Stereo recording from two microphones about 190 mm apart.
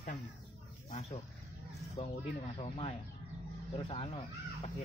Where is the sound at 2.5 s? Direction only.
30° left (ahead or behind).